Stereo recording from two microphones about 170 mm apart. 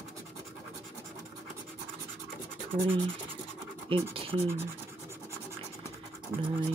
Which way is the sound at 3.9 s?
30° right (ahead or behind).